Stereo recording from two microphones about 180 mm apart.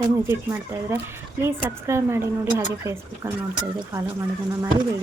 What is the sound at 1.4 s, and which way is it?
A woman's voice, 15° right (ahead or behind).